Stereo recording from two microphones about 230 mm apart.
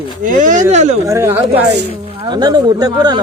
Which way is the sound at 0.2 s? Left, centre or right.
Right.